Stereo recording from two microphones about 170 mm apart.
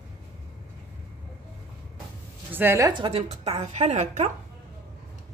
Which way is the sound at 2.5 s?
15° right (ahead or behind).